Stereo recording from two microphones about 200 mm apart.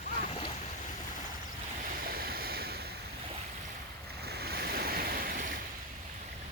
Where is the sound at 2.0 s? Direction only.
50° right (ahead or behind).